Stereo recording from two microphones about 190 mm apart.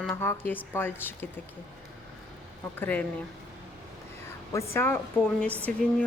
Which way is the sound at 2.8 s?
10° left (ahead or behind).